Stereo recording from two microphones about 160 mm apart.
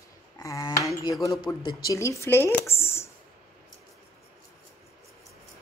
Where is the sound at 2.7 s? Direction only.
15° left (ahead or behind).